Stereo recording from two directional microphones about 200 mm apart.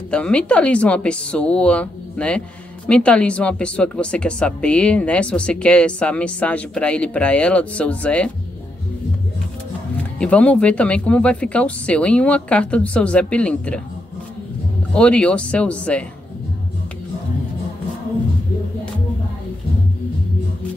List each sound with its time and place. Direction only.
0.1 s speech: 5° left (ahead or behind)
10.1 s speech: 5° left (ahead or behind)
15.0 s speech: 5° left (ahead or behind)